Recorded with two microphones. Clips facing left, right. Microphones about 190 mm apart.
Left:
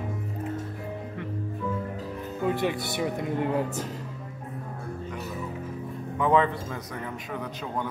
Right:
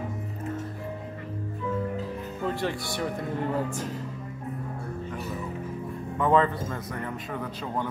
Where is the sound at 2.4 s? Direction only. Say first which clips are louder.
Left 3 dB; 15° left (ahead or behind).